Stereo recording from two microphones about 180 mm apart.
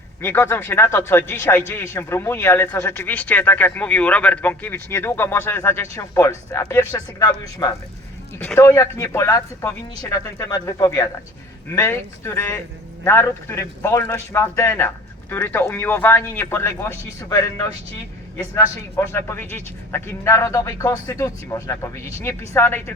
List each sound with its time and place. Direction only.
0.2 s speech: 15° left (ahead or behind)
8.4 s speech: 10° left (ahead or behind)